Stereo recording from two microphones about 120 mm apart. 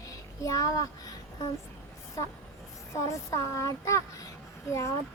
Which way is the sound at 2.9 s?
25° left (ahead or behind).